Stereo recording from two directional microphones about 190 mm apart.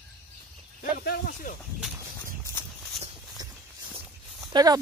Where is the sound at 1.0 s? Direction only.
50° left (ahead or behind).